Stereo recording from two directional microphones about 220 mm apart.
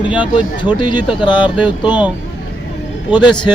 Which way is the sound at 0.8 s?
20° left (ahead or behind).